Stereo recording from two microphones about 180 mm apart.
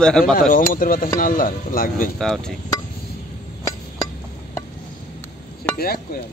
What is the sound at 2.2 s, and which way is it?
Speech, 5° left (ahead or behind).